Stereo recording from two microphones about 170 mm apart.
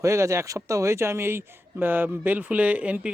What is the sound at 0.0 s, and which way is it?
A man's voice, 15° right (ahead or behind).